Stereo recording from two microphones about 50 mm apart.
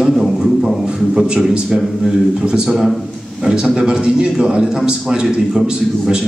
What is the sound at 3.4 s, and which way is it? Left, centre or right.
A man's voice, centre.